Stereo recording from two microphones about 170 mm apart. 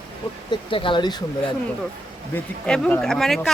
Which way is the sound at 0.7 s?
30° left (ahead or behind).